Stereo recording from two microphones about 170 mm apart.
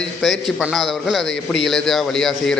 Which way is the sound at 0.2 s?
Centre (ahead or behind).